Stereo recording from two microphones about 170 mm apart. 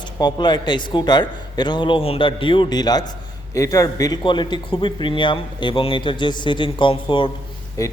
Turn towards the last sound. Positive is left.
turn(degrees=20)  # may be behind; listen again after turning